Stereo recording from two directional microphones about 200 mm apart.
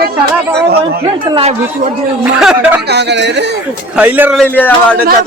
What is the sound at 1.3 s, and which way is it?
Speech, 25° right (ahead or behind).